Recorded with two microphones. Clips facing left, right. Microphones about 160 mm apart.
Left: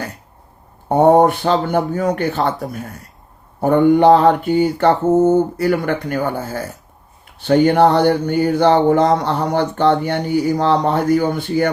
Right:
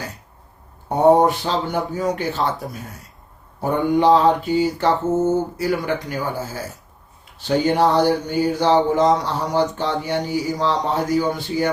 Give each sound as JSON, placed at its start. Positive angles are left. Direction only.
{"t": 0.9, "sound": "speech", "side_deg": 55}
{"t": 3.6, "sound": "speech", "side_deg": 55}